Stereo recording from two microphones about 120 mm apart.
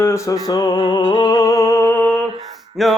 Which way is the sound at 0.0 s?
25° left (ahead or behind).